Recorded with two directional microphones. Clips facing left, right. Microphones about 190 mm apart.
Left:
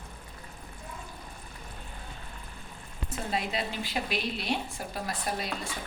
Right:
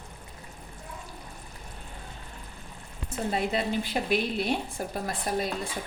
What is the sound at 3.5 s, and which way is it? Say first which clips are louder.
A woman's voice: right 5 dB; 50° right (ahead or behind).